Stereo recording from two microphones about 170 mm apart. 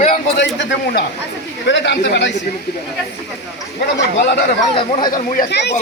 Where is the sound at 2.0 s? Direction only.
70° left (ahead or behind).